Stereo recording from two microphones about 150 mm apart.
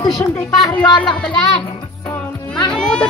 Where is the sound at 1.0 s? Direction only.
5° left (ahead or behind).